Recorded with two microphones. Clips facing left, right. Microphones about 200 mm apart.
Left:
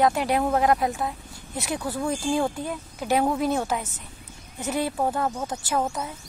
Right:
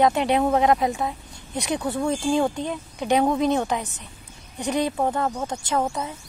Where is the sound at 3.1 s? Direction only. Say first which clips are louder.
Right 3 dB; 5° left (ahead or behind).